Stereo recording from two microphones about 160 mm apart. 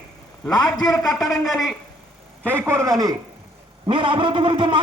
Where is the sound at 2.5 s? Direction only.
15° right (ahead or behind).